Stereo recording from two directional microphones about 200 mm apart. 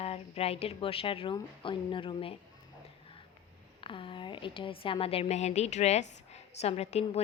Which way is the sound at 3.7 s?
25° left (ahead or behind).